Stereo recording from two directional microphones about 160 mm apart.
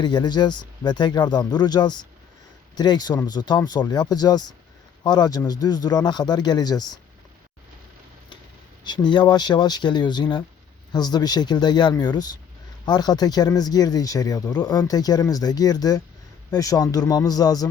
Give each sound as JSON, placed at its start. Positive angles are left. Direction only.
{"t": 0.0, "sound": "speech", "side_deg": 25}
{"t": 8.8, "sound": "speech", "side_deg": 30}